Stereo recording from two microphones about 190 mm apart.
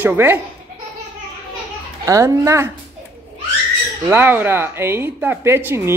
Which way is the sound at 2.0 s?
15° right (ahead or behind).